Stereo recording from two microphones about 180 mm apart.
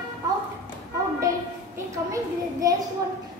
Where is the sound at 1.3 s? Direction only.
15° right (ahead or behind).